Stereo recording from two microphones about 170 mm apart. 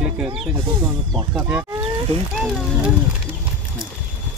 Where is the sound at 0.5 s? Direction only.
10° right (ahead or behind).